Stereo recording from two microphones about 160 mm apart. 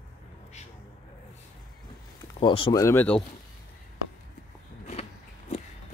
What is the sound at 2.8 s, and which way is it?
Speech, 15° left (ahead or behind).